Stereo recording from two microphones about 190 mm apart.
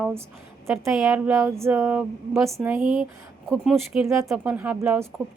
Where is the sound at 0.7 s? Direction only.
5° right (ahead or behind).